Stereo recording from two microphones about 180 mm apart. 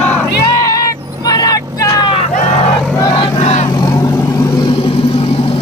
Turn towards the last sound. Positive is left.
turn(degrees=20)  # may be behind; listen again after turning